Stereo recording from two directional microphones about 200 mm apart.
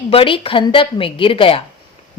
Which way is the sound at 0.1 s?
25° left (ahead or behind).